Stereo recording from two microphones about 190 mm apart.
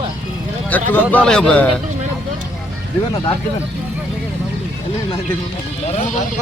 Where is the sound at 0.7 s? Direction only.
10° left (ahead or behind).